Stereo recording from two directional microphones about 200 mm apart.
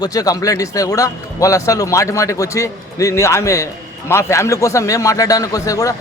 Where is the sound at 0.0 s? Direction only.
20° left (ahead or behind).